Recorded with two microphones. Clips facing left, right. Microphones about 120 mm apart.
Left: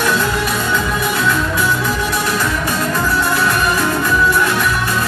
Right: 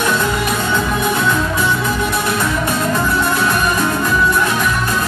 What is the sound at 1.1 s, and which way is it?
Music, 15° right (ahead or behind).